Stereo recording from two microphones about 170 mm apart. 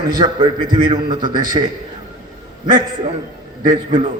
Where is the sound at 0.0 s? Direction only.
30° right (ahead or behind).